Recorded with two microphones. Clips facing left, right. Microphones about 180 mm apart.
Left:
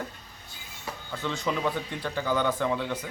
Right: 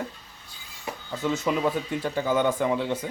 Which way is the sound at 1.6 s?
15° right (ahead or behind).